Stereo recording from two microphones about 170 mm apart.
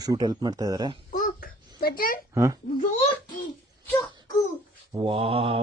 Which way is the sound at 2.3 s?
20° right (ahead or behind).